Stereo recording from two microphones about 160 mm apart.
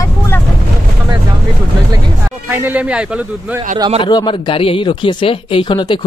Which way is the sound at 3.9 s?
30° left (ahead or behind).